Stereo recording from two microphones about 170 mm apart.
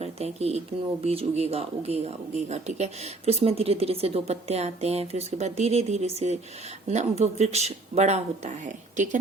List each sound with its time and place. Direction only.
0.0 s speech: 40° right (ahead or behind)